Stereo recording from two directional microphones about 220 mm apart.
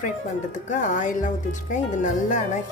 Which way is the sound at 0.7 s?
35° left (ahead or behind).